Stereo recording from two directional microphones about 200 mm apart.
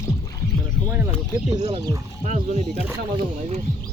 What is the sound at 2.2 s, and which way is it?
Speech, 35° right (ahead or behind).